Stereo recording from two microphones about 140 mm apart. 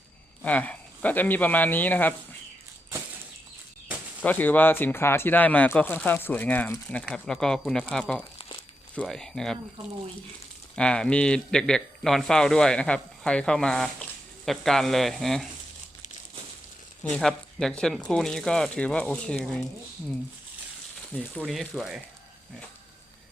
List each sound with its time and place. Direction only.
0.4 s speech: 10° left (ahead or behind)
4.2 s speech: 10° left (ahead or behind)
8.4 s crumpling: 40° left (ahead or behind)
9.0 s speech: 5° left (ahead or behind)
10.8 s speech: 5° left (ahead or behind)
17.0 s speech: 5° left (ahead or behind)
21.1 s speech: 10° left (ahead or behind)